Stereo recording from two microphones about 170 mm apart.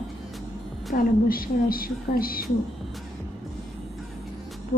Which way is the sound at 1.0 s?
60° left (ahead or behind).